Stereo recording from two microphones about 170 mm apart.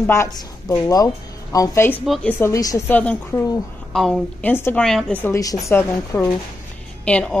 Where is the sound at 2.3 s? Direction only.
15° left (ahead or behind).